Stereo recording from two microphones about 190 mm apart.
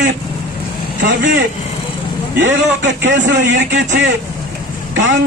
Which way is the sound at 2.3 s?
80° right.